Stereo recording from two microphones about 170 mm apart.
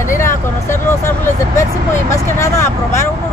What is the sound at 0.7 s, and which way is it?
Speech, 15° left (ahead or behind).